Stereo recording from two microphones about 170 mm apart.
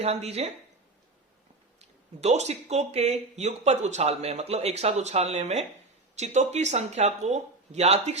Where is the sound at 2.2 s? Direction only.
40° right (ahead or behind).